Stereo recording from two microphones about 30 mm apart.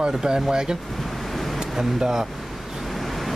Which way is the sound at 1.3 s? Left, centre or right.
Centre.